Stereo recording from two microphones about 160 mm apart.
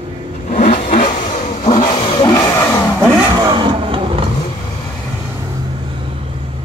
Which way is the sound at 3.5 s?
30° right (ahead or behind).